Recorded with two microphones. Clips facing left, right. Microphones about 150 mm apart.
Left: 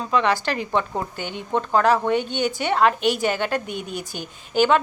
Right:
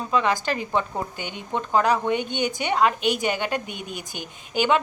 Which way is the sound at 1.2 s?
50° left (ahead or behind).